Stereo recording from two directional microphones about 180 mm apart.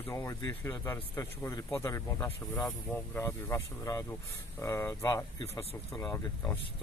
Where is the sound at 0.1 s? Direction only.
15° left (ahead or behind).